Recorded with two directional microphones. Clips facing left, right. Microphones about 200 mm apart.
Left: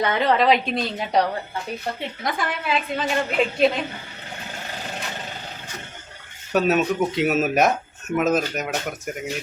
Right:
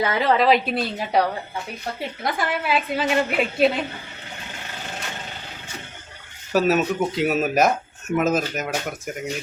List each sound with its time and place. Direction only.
0.0 s a woman's voice: 5° right (ahead or behind)
6.5 s a woman's voice: centre (ahead or behind)